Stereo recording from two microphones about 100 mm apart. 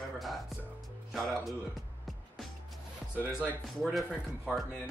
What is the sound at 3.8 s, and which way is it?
Speech, centre (ahead or behind).